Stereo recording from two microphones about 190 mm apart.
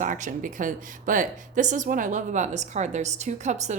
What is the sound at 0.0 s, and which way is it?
A woman's voice, 45° right (ahead or behind).